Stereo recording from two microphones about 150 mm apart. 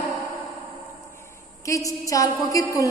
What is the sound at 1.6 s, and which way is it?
A woman's voice, 20° left (ahead or behind).